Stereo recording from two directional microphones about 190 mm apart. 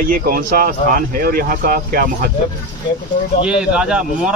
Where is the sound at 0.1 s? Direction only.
50° right (ahead or behind).